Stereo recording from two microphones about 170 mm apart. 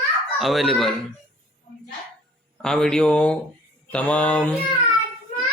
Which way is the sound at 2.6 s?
5° left (ahead or behind).